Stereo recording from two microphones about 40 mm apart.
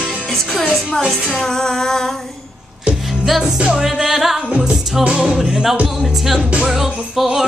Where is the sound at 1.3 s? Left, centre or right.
Centre.